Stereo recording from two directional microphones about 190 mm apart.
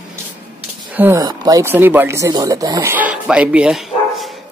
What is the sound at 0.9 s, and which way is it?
Speech, 10° right (ahead or behind).